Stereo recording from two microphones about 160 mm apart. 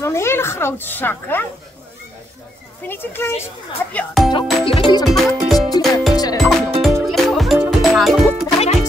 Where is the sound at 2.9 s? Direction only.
15° left (ahead or behind).